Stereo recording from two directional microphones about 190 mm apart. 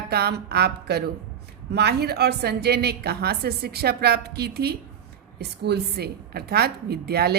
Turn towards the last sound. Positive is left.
turn(degrees=-55)  # may be behind; listen again after turning